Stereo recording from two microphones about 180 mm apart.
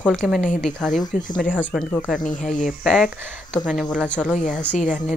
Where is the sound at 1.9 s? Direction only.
5° left (ahead or behind).